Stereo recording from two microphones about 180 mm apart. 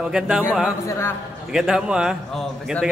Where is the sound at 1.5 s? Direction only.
5° right (ahead or behind).